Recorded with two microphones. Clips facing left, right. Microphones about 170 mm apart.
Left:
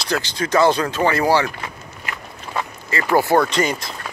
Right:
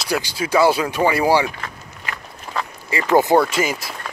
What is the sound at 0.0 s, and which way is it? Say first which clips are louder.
Speech: even; 10° right (ahead or behind).